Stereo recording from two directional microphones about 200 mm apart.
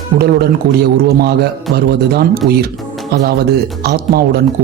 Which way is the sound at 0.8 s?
50° right (ahead or behind).